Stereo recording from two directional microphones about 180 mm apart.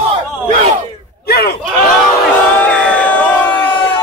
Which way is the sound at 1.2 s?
60° left (ahead or behind).